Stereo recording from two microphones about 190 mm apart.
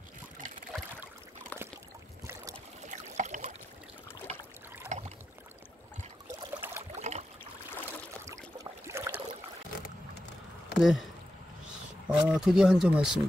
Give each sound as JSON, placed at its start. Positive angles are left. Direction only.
{"t": 2.9, "sound": "boat", "side_deg": -40}
{"t": 4.9, "sound": "rowboat", "side_deg": -40}
{"t": 6.2, "sound": "trickle", "side_deg": -15}
{"t": 7.0, "sound": "boat", "side_deg": -35}
{"t": 8.8, "sound": "a sound", "side_deg": -15}
{"t": 10.8, "sound": "speech", "side_deg": 0}
{"t": 12.1, "sound": "speech", "side_deg": -5}